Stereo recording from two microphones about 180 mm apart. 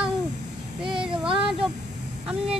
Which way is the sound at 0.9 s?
25° right (ahead or behind).